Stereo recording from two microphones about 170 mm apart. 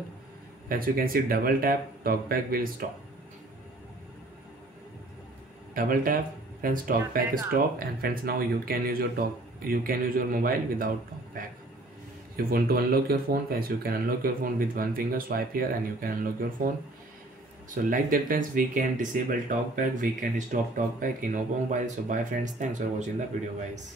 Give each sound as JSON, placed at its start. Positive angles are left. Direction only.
{"t": 0.7, "sound": "speech", "side_deg": -60}
{"t": 5.8, "sound": "speech", "side_deg": -55}
{"t": 17.6, "sound": "speech", "side_deg": -50}